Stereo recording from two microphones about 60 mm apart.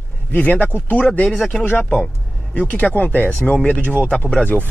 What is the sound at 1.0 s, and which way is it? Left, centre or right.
Speech, centre.